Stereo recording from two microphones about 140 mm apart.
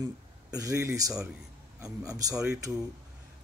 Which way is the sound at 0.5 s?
20° right (ahead or behind).